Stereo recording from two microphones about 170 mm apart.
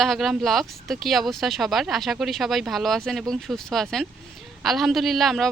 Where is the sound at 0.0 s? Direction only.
Centre (ahead or behind).